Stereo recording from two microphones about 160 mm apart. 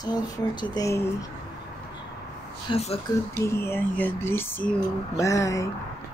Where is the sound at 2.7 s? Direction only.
40° left (ahead or behind).